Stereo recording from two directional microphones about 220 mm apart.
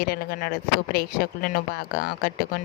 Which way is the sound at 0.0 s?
45° left (ahead or behind).